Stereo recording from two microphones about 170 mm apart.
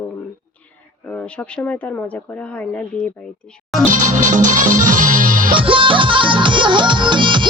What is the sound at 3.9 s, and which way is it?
Music, 50° right (ahead or behind).